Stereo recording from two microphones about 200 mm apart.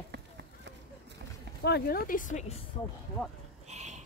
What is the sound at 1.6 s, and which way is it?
Speech, 50° left (ahead or behind).